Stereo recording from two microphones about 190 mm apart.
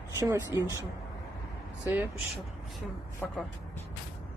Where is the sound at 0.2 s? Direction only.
15° right (ahead or behind).